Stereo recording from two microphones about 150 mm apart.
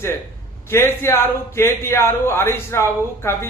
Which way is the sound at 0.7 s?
15° left (ahead or behind).